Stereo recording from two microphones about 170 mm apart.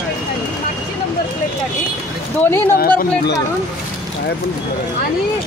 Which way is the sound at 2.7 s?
65° left (ahead or behind).